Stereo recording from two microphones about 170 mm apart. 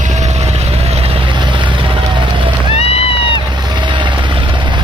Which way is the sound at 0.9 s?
30° right (ahead or behind).